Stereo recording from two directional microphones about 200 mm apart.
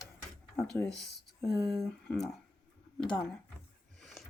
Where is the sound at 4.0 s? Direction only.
Centre (ahead or behind).